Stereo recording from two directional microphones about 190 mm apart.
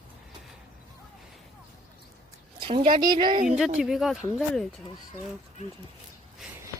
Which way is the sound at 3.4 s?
5° right (ahead or behind).